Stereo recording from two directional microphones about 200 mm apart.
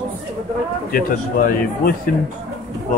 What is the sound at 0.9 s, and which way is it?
A man's voice, 45° left (ahead or behind).